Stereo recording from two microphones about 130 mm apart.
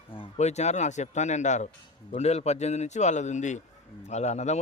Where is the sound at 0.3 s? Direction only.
60° left (ahead or behind).